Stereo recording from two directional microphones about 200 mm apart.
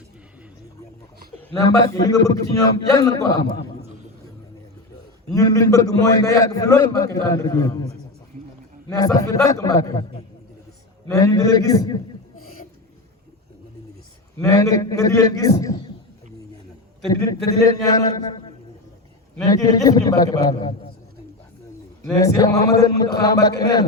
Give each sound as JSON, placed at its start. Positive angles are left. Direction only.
{"t": 1.9, "sound": "a man's voice", "side_deg": 15}
{"t": 5.3, "sound": "a man's voice", "side_deg": 15}
{"t": 8.9, "sound": "a man's voice", "side_deg": 20}
{"t": 11.1, "sound": "a man's voice", "side_deg": 20}
{"t": 14.5, "sound": "a man's voice", "side_deg": 15}
{"t": 17.1, "sound": "a man's voice", "side_deg": 20}
{"t": 19.5, "sound": "a man's voice", "side_deg": 20}
{"t": 22.2, "sound": "a man's voice", "side_deg": 15}